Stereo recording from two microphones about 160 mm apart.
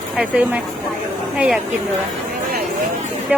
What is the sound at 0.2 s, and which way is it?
Speech, 5° right (ahead or behind).